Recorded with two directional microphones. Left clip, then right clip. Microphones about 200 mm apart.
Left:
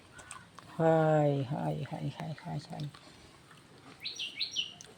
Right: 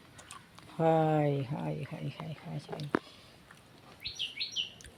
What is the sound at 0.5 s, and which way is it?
Speech, 15° right (ahead or behind).